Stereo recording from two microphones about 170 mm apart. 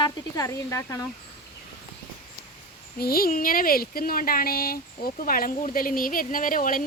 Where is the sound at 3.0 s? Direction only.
65° left (ahead or behind).